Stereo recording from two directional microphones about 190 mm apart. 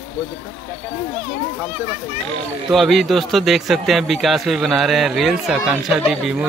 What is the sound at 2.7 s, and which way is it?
Speech, centre (ahead or behind).